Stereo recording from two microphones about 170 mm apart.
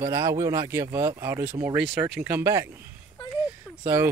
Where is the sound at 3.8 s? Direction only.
10° right (ahead or behind).